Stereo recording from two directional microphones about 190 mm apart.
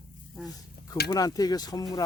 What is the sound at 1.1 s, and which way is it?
Speech, 20° left (ahead or behind).